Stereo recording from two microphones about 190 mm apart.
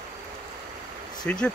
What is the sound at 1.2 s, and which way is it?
Speech, 5° left (ahead or behind).